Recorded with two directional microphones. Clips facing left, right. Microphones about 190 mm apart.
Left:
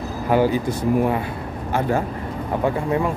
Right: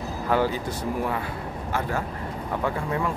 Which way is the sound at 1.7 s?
25° left (ahead or behind).